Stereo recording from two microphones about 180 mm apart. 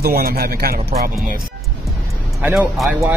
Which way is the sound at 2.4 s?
5° right (ahead or behind).